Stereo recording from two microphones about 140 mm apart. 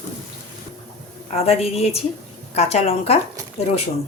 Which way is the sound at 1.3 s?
45° left (ahead or behind).